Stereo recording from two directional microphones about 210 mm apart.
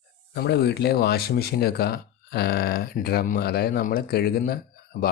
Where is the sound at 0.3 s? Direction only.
50° left (ahead or behind).